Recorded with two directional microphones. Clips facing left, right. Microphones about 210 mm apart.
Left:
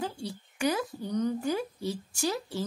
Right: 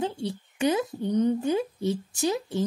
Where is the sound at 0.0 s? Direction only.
20° right (ahead or behind).